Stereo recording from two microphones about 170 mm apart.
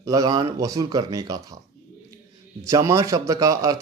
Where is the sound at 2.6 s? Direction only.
20° right (ahead or behind).